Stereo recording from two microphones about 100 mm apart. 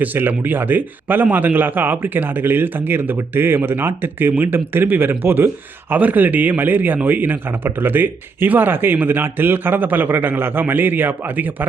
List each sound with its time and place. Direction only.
0.0 s speech: 20° right (ahead or behind)